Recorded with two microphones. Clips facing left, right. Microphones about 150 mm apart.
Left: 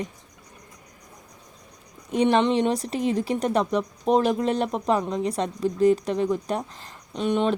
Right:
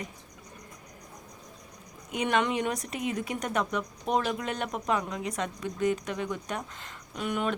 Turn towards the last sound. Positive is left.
turn(degrees=25)  # may be behind; listen again after turning